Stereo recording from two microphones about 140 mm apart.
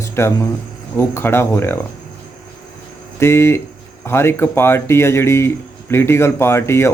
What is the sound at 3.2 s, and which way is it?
Speech, 20° left (ahead or behind).